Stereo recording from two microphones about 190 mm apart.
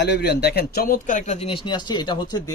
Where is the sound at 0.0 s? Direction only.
60° left (ahead or behind).